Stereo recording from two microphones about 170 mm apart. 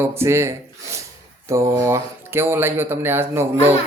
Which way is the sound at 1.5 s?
15° right (ahead or behind).